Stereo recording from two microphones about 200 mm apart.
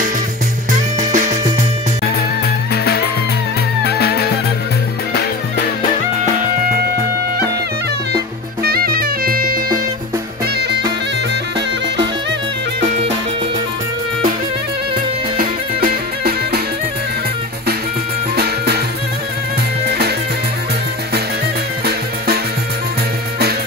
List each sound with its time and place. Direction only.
0.7 s music: 40° right (ahead or behind)
2.7 s music: 50° left (ahead or behind)
8.6 s music: 50° right (ahead or behind)
12.8 s music: 30° right (ahead or behind)
15.3 s music: 50° right (ahead or behind)
18.3 s music: 55° right (ahead or behind)